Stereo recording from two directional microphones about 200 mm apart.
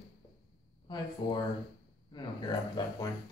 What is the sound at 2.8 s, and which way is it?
Speech, 20° left (ahead or behind).